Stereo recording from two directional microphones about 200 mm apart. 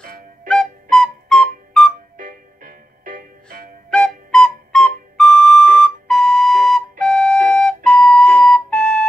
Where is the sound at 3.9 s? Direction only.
5° left (ahead or behind).